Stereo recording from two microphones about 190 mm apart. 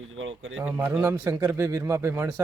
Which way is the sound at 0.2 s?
90° right.